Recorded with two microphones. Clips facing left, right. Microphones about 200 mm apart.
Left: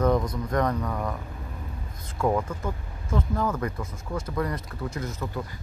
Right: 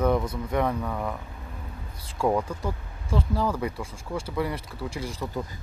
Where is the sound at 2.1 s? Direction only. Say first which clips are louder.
Even; 10° right (ahead or behind).